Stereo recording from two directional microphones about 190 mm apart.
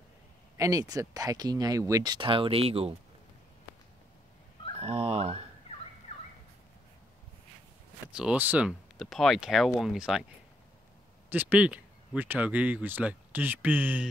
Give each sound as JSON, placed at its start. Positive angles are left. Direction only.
{"t": 0.6, "sound": "speech", "side_deg": -20}
{"t": 4.7, "sound": "fowl", "side_deg": -35}
{"t": 8.1, "sound": "speech", "side_deg": -5}
{"t": 11.2, "sound": "speech", "side_deg": -10}